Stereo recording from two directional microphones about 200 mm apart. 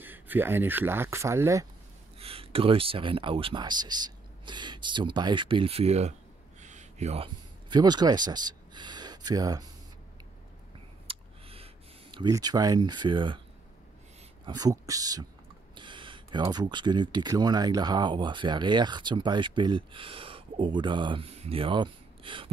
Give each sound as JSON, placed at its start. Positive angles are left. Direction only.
{"t": 0.0, "sound": "speech", "side_deg": -10}
{"t": 2.1, "sound": "speech", "side_deg": -30}
{"t": 6.6, "sound": "a sound", "side_deg": -35}
{"t": 7.7, "sound": "speech", "side_deg": -20}
{"t": 11.1, "sound": "a sound", "side_deg": -30}
{"t": 14.4, "sound": "speech", "side_deg": -20}